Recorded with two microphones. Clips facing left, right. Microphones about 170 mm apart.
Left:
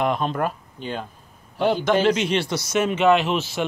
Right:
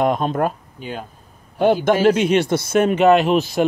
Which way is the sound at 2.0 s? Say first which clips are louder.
Right 5 dB; 50° right (ahead or behind).